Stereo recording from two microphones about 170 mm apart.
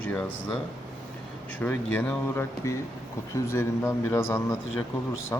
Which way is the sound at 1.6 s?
10° left (ahead or behind).